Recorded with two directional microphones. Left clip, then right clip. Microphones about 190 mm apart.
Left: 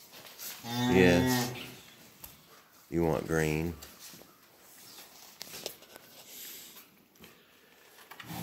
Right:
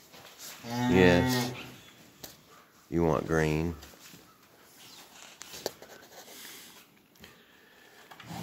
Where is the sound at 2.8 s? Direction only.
15° right (ahead or behind).